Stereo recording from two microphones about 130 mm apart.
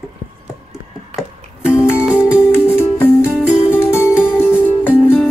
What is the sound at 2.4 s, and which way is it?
Music, 20° left (ahead or behind).